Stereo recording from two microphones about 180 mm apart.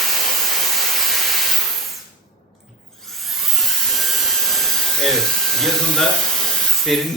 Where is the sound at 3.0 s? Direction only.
Centre (ahead or behind).